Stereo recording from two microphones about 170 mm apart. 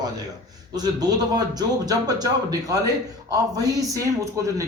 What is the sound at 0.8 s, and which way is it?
Speech, 25° right (ahead or behind).